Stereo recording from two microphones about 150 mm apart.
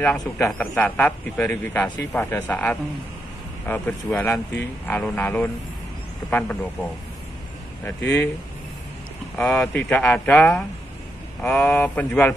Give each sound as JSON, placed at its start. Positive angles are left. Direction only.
{"t": 0.5, "sound": "speech", "side_deg": 10}
{"t": 7.8, "sound": "speech", "side_deg": 15}
{"t": 9.4, "sound": "speech", "side_deg": 5}